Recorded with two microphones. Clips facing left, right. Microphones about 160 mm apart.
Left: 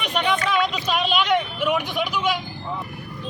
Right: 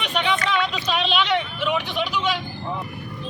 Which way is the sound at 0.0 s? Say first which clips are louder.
Left 1 dB; 5° left (ahead or behind).